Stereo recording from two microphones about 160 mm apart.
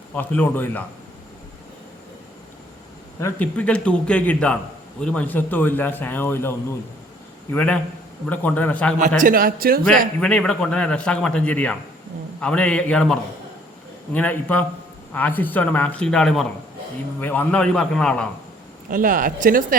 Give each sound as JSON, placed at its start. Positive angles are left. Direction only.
{"t": 0.1, "sound": "speech", "side_deg": 10}
{"t": 3.2, "sound": "speech", "side_deg": 15}
{"t": 7.5, "sound": "speech", "side_deg": 10}
{"t": 9.0, "sound": "a man's voice", "side_deg": -55}
{"t": 10.2, "sound": "a man's voice", "side_deg": 5}
{"t": 18.9, "sound": "a man's voice", "side_deg": -60}